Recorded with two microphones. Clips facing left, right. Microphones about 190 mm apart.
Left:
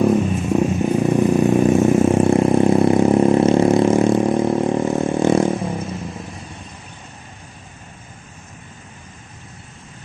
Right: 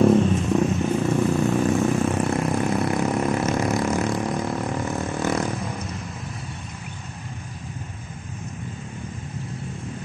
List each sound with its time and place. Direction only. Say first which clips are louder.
0.5 s vehicle: left 3 dB; 15° left (ahead or behind)